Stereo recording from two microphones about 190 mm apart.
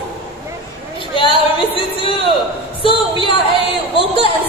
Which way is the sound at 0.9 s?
25° left (ahead or behind).